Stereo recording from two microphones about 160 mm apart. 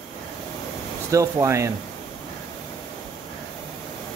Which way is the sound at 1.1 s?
20° right (ahead or behind).